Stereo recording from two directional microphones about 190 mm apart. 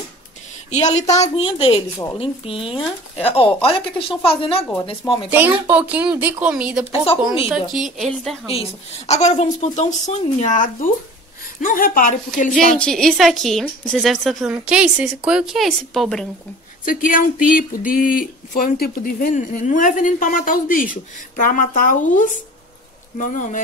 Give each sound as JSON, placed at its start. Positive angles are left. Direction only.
{"t": 0.7, "sound": "a woman's voice", "side_deg": 35}
{"t": 5.7, "sound": "a woman's voice", "side_deg": -10}
{"t": 8.5, "sound": "a woman's voice", "side_deg": 35}
{"t": 12.5, "sound": "a woman's voice", "side_deg": 5}
{"t": 16.8, "sound": "a woman's voice", "side_deg": 45}